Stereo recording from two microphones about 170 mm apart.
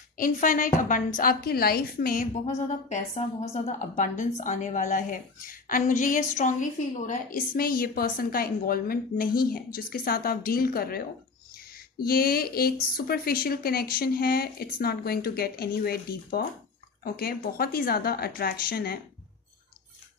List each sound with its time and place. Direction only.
0.2 s a woman's voice: 50° left (ahead or behind)